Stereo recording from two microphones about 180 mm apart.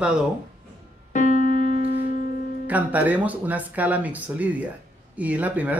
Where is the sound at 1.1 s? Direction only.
45° left (ahead or behind).